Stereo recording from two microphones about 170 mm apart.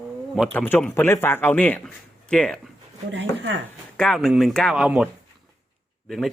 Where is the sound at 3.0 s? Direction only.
90° right.